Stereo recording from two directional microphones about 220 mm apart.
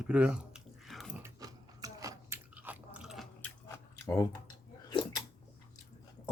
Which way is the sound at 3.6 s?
10° left (ahead or behind).